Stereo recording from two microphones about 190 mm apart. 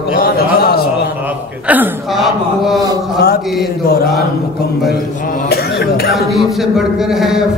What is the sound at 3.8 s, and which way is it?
Mantra, 55° left (ahead or behind).